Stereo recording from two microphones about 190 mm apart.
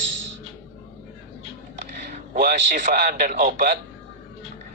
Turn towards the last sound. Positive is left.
turn(degrees=-45)  # may be behind; listen again after turning